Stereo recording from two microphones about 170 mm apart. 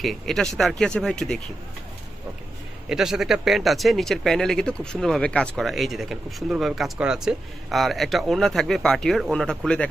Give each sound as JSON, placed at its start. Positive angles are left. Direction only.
{"t": 0.0, "sound": "speech", "side_deg": 0}
{"t": 2.9, "sound": "speech", "side_deg": -5}